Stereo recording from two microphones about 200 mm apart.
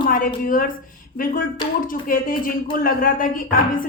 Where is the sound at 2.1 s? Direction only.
45° left (ahead or behind).